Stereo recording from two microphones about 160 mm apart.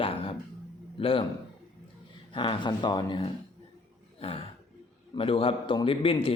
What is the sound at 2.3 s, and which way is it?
Speech, 30° left (ahead or behind).